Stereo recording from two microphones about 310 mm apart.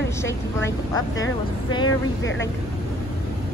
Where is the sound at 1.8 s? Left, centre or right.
Left.